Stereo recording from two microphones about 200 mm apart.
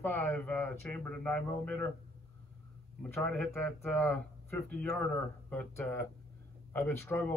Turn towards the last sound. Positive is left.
turn(degrees=10)  # may be behind; listen again after turning